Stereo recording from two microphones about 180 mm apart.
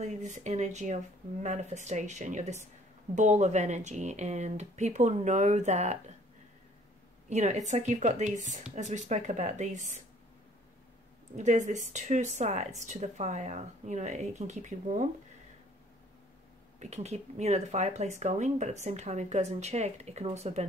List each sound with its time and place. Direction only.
0.0 s speech: 40° right (ahead or behind)
7.2 s speech: 40° right (ahead or behind)
11.3 s speech: 40° right (ahead or behind)
16.8 s speech: 35° right (ahead or behind)